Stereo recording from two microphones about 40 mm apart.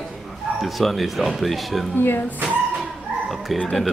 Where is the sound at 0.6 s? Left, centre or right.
Centre.